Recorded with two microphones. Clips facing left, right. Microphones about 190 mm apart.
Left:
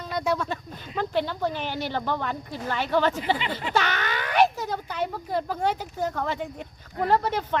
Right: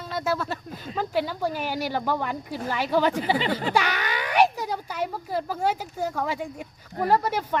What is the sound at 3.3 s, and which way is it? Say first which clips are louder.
Speech: right 5 dB; 35° right (ahead or behind).